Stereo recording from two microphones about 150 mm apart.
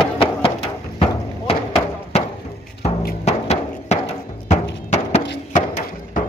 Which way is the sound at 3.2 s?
45° left (ahead or behind).